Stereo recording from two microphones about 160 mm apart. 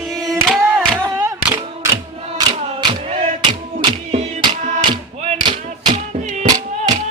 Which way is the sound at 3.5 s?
30° right (ahead or behind).